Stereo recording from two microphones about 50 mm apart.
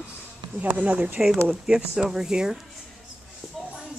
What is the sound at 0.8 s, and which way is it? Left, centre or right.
Speech, right.